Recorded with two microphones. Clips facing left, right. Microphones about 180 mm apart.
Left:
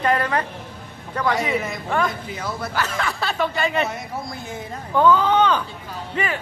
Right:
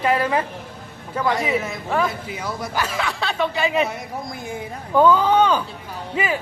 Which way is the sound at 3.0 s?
Centre (ahead or behind).